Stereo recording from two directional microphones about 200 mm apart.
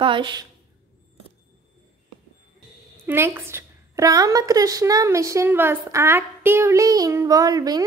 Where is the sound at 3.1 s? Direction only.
10° right (ahead or behind).